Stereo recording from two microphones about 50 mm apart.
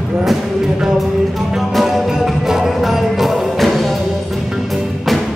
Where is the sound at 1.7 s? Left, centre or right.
Centre.